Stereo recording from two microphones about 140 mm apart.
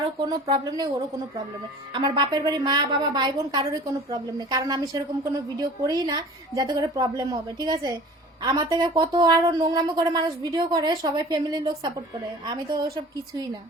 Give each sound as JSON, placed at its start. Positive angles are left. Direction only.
{"t": 0.3, "sound": "speech", "side_deg": -25}
{"t": 1.9, "sound": "speech", "side_deg": -35}